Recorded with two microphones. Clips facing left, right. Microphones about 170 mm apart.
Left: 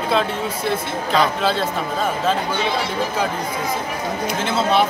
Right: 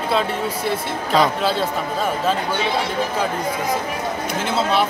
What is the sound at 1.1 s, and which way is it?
Speech, 5° right (ahead or behind).